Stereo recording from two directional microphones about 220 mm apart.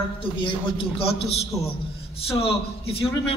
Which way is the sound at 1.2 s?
25° left (ahead or behind).